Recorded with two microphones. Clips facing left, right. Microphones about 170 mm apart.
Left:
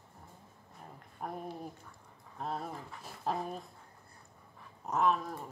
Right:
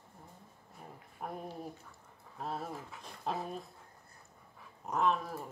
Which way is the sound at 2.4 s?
Centre (ahead or behind).